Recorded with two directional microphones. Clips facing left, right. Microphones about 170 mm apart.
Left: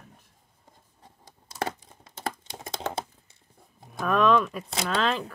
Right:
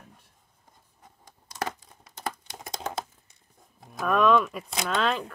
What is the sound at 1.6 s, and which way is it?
Computer keyboard, 25° left (ahead or behind).